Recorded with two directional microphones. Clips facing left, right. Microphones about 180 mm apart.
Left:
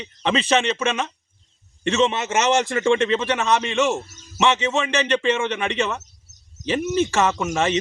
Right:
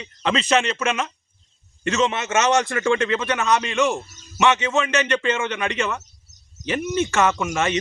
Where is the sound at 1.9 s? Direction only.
30° left (ahead or behind).